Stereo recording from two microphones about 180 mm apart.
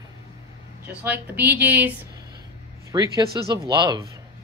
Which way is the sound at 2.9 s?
25° right (ahead or behind).